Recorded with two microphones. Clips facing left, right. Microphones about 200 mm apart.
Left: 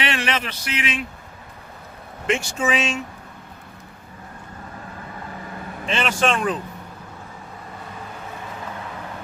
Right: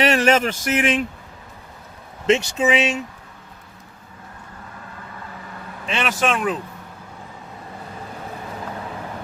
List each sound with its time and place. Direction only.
0.0 s speech: 40° right (ahead or behind)
2.3 s speech: 20° right (ahead or behind)
5.8 s speech: centre (ahead or behind)